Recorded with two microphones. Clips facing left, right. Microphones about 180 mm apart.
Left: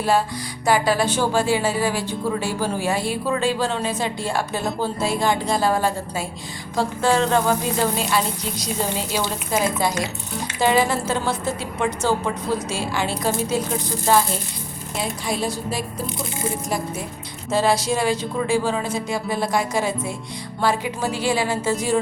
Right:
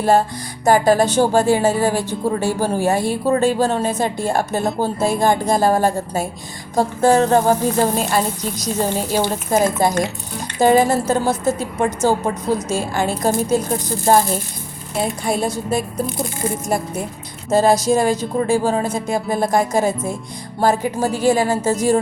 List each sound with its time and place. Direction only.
0.0 s a woman's voice: 45° right (ahead or behind)
17.5 s a woman's voice: 45° right (ahead or behind)